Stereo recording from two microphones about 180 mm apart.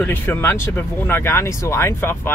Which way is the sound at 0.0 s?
10° left (ahead or behind).